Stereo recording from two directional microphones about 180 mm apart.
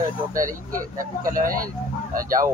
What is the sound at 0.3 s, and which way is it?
A child's voice, 50° right (ahead or behind).